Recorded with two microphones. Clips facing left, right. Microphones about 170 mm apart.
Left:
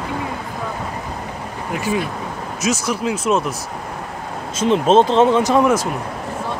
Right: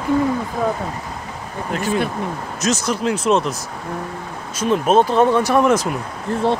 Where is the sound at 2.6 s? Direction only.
10° left (ahead or behind).